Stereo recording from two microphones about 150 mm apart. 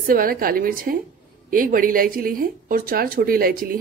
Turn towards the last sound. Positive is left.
turn(degrees=-75)  # may be behind; listen again after turning